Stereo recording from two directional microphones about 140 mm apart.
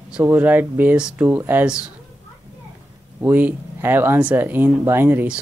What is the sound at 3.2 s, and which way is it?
Speech, 15° right (ahead or behind).